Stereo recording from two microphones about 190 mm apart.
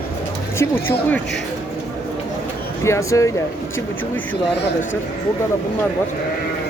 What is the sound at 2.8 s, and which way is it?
Speech, 15° left (ahead or behind).